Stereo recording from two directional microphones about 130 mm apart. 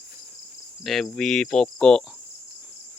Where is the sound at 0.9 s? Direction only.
Centre (ahead or behind).